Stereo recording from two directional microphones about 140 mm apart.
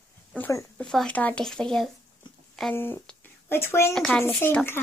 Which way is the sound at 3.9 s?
5° left (ahead or behind).